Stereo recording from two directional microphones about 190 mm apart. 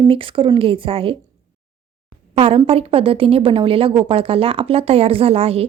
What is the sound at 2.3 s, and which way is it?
Speech, 30° right (ahead or behind).